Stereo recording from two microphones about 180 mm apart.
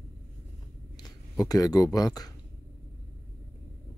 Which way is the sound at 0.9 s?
20° left (ahead or behind).